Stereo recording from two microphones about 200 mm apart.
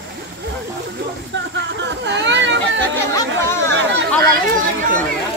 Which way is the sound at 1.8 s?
60° right (ahead or behind).